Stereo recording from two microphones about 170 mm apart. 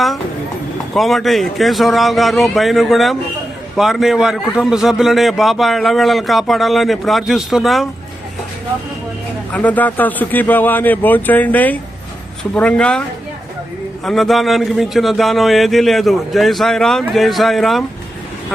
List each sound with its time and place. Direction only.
0.9 s a man's voice: centre (ahead or behind)
9.5 s a man's voice: 10° left (ahead or behind)